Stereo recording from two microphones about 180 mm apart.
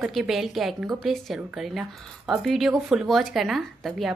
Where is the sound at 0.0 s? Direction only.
Centre (ahead or behind).